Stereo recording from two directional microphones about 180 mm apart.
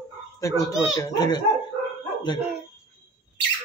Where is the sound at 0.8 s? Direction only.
20° left (ahead or behind).